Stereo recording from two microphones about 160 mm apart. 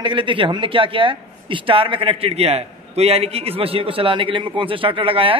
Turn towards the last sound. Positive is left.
turn(degrees=-35)  # may be behind; listen again after turning